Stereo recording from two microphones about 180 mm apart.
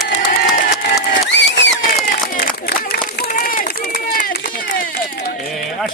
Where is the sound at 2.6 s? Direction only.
55° left (ahead or behind).